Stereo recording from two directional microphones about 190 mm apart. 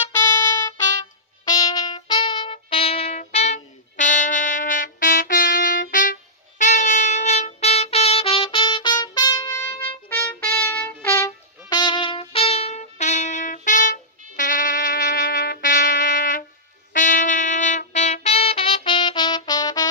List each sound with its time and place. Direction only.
1.8 s music: 20° left (ahead or behind); by 6.1 s 45° left (ahead or behind)
6.6 s trumpet: 40° left (ahead or behind); by 19.9 s 20° left (ahead or behind)